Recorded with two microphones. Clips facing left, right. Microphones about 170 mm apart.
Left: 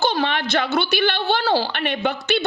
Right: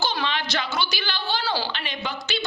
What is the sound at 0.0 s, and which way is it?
Speech, 55° left (ahead or behind).